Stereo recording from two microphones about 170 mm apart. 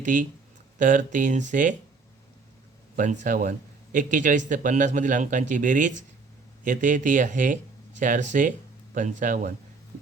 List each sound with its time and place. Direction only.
0.0 s a man's voice: 50° right (ahead or behind)
2.9 s a man's voice: 50° right (ahead or behind)